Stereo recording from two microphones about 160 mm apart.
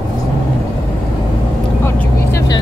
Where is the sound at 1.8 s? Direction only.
15° left (ahead or behind).